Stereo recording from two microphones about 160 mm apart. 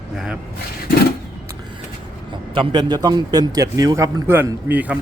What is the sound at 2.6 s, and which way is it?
A man's voice, 25° right (ahead or behind).